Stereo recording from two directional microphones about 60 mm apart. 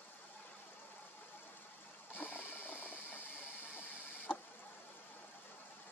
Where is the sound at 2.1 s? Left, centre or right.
Left.